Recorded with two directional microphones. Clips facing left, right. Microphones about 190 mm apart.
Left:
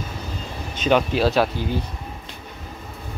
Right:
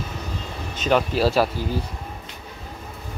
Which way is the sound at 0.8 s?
Centre (ahead or behind).